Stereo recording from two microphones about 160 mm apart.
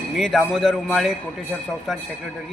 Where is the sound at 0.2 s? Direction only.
Centre (ahead or behind).